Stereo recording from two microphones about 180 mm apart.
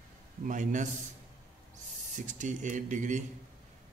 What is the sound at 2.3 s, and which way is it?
Speech, 45° right (ahead or behind).